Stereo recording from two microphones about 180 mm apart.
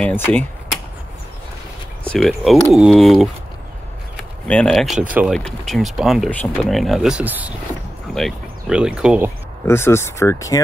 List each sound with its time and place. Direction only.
0.0 s speech: 10° left (ahead or behind)
2.0 s speech: centre (ahead or behind)
9.7 s speech: 15° left (ahead or behind)